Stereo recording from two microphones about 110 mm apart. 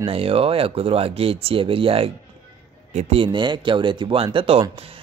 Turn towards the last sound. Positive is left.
turn(degrees=-55)  # may be behind; listen again after turning